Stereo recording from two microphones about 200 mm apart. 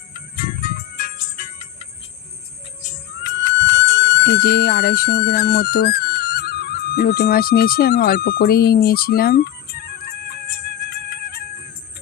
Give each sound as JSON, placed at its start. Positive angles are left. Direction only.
{"t": 0.1, "sound": "music", "side_deg": 45}
{"t": 3.2, "sound": "music", "side_deg": 65}